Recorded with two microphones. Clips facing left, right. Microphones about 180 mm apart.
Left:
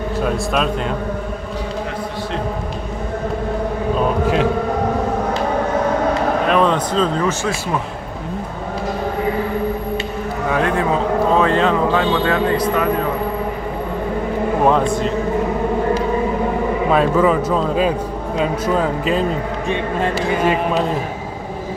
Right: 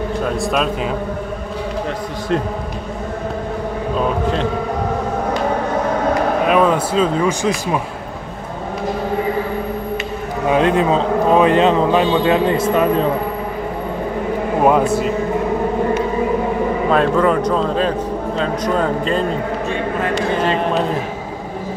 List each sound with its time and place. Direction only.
0.2 s speech: centre (ahead or behind)
6.4 s speech: 5° right (ahead or behind)
10.5 s a man's voice: 20° right (ahead or behind)
14.6 s speech: 10° right (ahead or behind)
16.9 s speech: 5° left (ahead or behind)